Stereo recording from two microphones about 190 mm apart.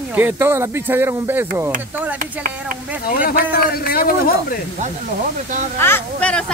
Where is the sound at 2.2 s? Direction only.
45° right (ahead or behind).